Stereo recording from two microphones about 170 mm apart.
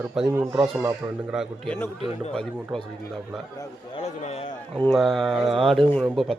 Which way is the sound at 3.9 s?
40° left (ahead or behind).